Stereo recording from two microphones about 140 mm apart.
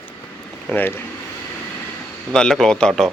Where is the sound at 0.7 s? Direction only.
15° left (ahead or behind).